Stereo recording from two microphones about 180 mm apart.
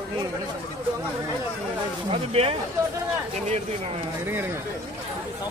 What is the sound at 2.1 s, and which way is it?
Speech, 35° right (ahead or behind).